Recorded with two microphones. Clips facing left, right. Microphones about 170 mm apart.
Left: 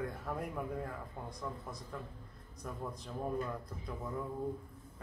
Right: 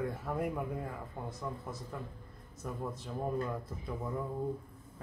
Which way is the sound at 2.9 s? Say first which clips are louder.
Right 1 dB; 5° right (ahead or behind).